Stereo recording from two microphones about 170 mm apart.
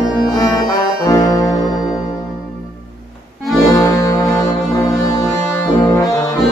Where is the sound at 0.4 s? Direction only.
25° left (ahead or behind).